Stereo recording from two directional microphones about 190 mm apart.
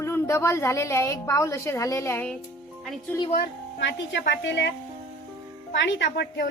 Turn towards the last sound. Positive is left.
turn(degrees=65)  # may be behind; listen again after turning